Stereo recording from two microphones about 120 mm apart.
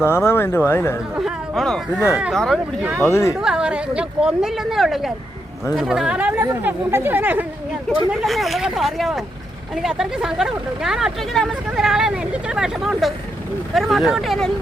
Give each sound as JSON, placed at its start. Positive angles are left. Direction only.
{"t": 0.0, "sound": "speech", "side_deg": 20}
{"t": 1.1, "sound": "speech", "side_deg": 0}
{"t": 2.8, "sound": "speech", "side_deg": -10}
{"t": 3.1, "sound": "speech", "side_deg": 20}
{"t": 3.4, "sound": "speech", "side_deg": -5}
{"t": 8.1, "sound": "speech", "side_deg": 0}